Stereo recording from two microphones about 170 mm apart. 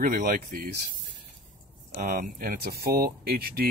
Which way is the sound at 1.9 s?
55° right (ahead or behind).